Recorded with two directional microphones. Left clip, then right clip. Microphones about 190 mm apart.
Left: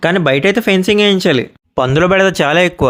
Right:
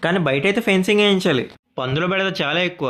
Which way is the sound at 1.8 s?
55° left (ahead or behind).